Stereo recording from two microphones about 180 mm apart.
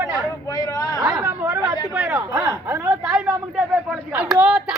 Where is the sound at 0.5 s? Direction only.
20° left (ahead or behind).